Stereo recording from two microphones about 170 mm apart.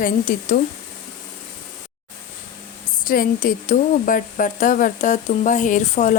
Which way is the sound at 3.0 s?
55° left (ahead or behind).